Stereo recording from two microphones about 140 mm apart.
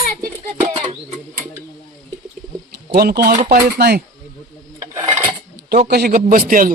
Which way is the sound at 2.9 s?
90° right.